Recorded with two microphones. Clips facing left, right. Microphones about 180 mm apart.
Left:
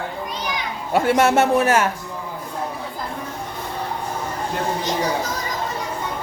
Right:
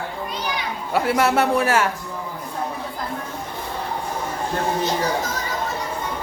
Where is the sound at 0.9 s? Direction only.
25° left (ahead or behind).